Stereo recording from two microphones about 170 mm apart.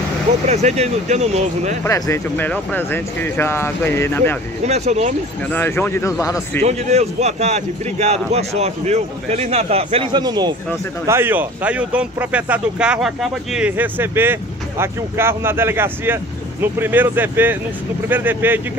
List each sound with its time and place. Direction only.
0.5 s speech: 40° right (ahead or behind)
1.9 s speech: 20° left (ahead or behind)
4.6 s speech: 40° right (ahead or behind)
5.5 s a man's voice: 10° left (ahead or behind)
6.6 s speech: 40° right (ahead or behind)
10.2 s speech: 25° right (ahead or behind)
11.1 s speech: 15° right (ahead or behind)